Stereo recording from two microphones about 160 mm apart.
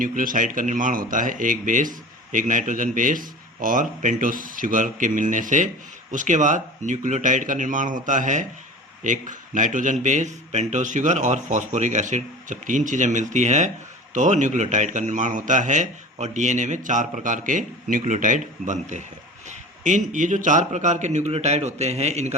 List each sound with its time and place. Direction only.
0.0 s a man's voice: 55° right (ahead or behind)